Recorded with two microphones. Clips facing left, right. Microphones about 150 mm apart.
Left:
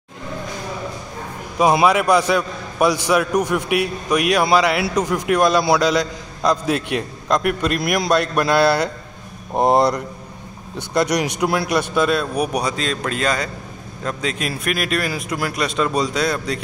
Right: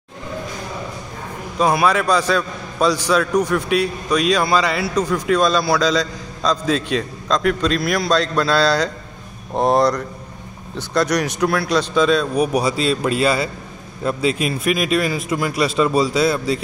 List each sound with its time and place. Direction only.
1.6 s a man's voice: 20° left (ahead or behind)
11.9 s a man's voice: 5° left (ahead or behind)